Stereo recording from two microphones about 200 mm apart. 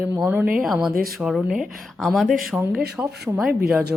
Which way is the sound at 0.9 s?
50° right (ahead or behind).